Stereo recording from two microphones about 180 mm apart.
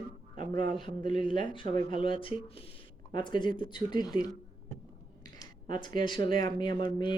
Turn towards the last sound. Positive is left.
turn(degrees=25)  # may be behind; listen again after turning